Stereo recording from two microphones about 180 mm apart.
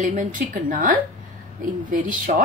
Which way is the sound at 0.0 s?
45° right (ahead or behind).